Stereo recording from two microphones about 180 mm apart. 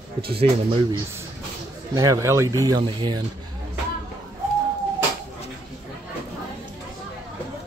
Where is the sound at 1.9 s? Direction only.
20° right (ahead or behind).